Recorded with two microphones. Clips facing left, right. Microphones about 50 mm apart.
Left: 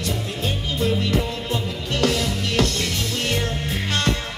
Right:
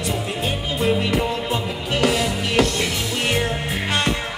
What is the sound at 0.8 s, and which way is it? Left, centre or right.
Music, right.